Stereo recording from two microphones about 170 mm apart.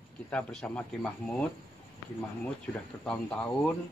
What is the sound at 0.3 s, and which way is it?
Speech, 5° left (ahead or behind).